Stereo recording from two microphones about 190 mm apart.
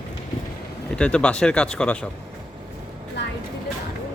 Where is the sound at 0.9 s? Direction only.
5° left (ahead or behind).